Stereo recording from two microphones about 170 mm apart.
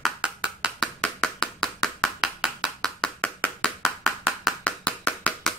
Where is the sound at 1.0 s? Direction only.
5° left (ahead or behind).